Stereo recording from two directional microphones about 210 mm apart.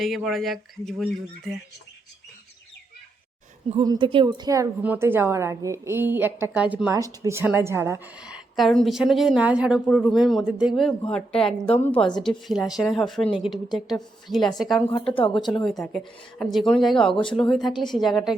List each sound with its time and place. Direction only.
0.0 s speech: centre (ahead or behind)
3.8 s a woman's voice: 25° right (ahead or behind); by 14.9 s centre (ahead or behind)
15.1 s speech: 25° left (ahead or behind)
15.4 s speech: centre (ahead or behind)